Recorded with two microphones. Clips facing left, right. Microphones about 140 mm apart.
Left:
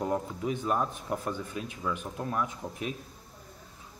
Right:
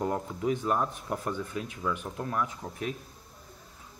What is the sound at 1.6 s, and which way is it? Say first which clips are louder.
Speech: right 1 dB; 20° left (ahead or behind).